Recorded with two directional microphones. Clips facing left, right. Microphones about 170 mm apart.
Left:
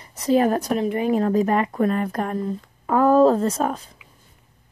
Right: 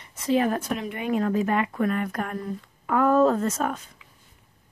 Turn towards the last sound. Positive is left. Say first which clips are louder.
# left 4 dB
turn(degrees=35)  # may be behind; listen again after turning